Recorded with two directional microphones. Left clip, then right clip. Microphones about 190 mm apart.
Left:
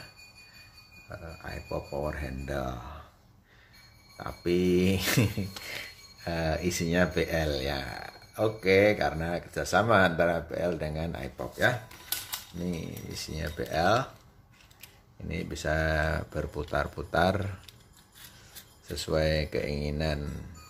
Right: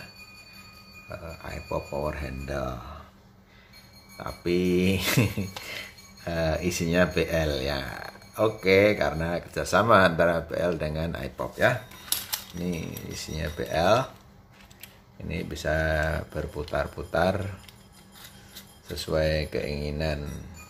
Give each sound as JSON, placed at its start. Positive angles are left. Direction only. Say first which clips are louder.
{"t": 1.0, "sound": "speech", "louder": "right 3 dB", "side_deg": 5}
{"t": 4.2, "sound": "speech", "louder": "right 1 dB", "side_deg": 10}
{"t": 15.2, "sound": "speech", "louder": "right 2 dB", "side_deg": 10}
{"t": 18.9, "sound": "speech", "louder": "right 2 dB", "side_deg": 15}